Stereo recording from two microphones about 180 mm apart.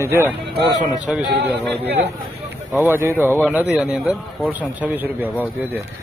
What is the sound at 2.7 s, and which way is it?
Speech, 10° right (ahead or behind).